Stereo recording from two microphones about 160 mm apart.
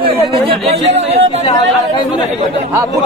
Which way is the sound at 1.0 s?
40° right (ahead or behind).